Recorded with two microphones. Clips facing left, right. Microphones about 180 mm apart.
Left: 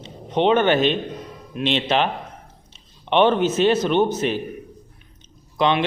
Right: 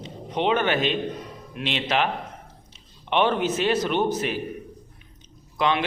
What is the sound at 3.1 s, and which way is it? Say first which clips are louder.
A man's voice: left 5 dB; 25° left (ahead or behind).